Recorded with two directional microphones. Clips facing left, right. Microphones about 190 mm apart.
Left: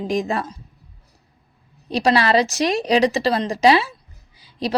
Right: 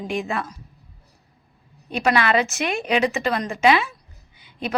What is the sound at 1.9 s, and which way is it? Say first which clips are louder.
A woman's voice: left 3 dB; 35° left (ahead or behind).